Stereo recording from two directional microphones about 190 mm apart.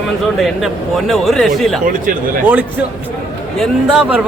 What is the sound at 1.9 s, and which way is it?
Speech, 45° right (ahead or behind).